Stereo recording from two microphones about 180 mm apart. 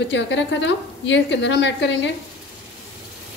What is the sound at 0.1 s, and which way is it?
A woman's voice, 85° left.